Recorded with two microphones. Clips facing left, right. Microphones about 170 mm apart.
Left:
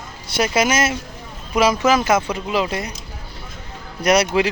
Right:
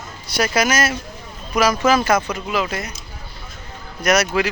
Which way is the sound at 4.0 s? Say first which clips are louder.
Left 2 dB; 30° left (ahead or behind).